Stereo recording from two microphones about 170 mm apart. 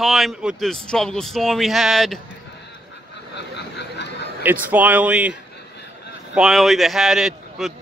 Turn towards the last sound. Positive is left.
turn(degrees=0)  # may be behind; listen again after turning